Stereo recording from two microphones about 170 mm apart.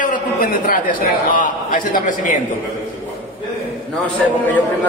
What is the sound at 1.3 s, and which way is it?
A man's voice, 55° left (ahead or behind).